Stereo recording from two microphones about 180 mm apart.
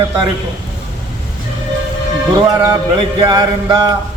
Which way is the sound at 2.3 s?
20° right (ahead or behind).